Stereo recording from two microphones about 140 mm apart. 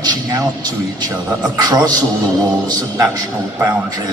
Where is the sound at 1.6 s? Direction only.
30° right (ahead or behind).